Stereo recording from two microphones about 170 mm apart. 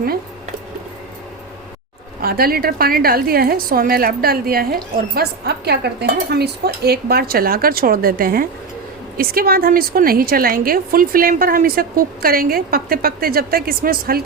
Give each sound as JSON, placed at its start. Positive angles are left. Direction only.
{"t": 2.2, "sound": "a woman's voice", "side_deg": -60}